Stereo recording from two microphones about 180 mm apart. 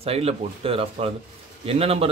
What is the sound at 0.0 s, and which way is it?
A man's voice, 35° right (ahead or behind).